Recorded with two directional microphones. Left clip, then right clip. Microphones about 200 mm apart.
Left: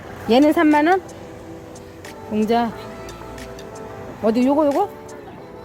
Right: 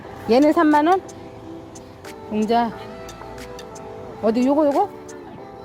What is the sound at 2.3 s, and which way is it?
Speech, 25° right (ahead or behind).